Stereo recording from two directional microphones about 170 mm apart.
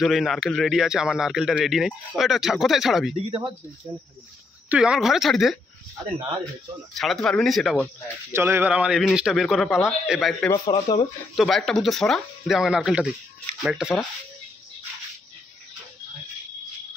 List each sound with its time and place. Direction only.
0.0 s a man's voice: centre (ahead or behind)
3.2 s speech: 35° right (ahead or behind)
4.6 s a man's voice: 5° right (ahead or behind)
7.0 s a man's voice: centre (ahead or behind)
8.3 s a man's voice: 15° right (ahead or behind)
10.5 s speech: 25° left (ahead or behind)
11.3 s a man's voice: centre (ahead or behind)